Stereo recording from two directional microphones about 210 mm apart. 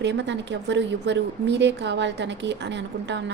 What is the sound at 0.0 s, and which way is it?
A woman's voice, 55° right (ahead or behind).